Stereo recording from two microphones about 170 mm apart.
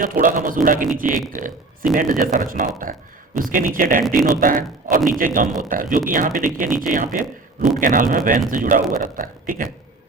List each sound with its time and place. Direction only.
0.0 s a man's voice: 50° right (ahead or behind)